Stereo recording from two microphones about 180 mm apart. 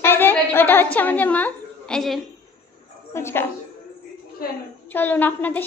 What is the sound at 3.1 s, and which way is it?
Speech, 15° left (ahead or behind).